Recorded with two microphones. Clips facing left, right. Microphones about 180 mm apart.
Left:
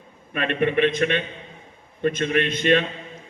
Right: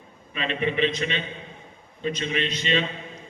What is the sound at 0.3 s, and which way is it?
A man's voice, 55° left (ahead or behind).